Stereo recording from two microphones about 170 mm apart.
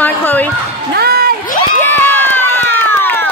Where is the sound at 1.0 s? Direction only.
65° right (ahead or behind).